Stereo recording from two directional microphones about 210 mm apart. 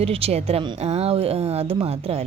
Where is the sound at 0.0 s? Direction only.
30° right (ahead or behind).